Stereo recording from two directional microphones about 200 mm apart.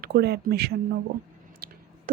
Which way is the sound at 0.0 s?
50° right (ahead or behind).